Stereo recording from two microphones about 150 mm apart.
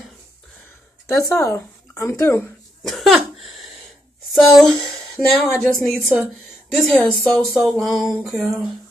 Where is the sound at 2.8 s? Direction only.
Centre (ahead or behind).